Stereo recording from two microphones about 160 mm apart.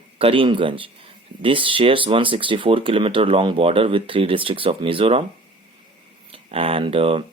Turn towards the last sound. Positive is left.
turn(degrees=-35)  # may be behind; listen again after turning